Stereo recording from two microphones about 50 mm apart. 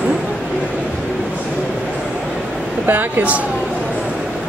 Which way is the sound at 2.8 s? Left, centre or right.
Right.